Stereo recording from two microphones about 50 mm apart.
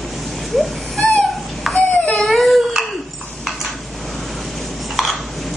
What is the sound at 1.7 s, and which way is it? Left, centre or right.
Wail, left.